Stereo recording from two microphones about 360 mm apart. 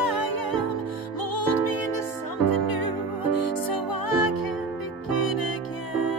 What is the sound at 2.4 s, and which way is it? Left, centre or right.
Music, left.